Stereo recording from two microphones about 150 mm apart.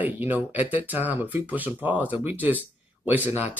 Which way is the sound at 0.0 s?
10° right (ahead or behind).